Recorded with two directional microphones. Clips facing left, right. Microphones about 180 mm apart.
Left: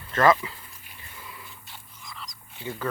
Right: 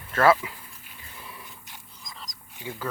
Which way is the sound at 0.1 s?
10° right (ahead or behind).